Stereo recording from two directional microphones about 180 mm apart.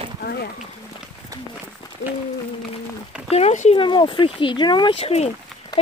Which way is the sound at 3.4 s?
35° left (ahead or behind).